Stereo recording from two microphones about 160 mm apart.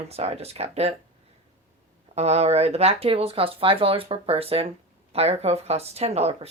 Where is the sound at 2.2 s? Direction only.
40° right (ahead or behind).